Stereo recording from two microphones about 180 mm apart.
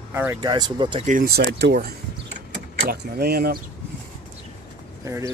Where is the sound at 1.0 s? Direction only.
50° right (ahead or behind).